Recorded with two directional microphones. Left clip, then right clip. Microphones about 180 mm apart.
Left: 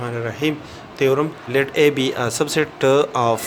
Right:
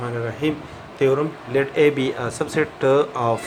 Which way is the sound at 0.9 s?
40° left (ahead or behind).